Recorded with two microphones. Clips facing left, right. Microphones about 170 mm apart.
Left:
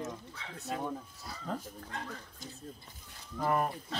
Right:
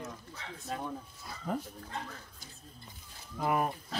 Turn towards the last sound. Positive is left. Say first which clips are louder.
# even
turn(degrees=-5)  # may be behind; listen again after turning